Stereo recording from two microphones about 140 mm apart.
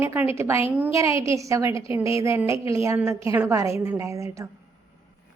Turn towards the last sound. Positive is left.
turn(degrees=-20)  # may be behind; listen again after turning